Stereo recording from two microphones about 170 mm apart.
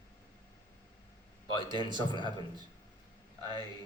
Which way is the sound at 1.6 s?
25° right (ahead or behind).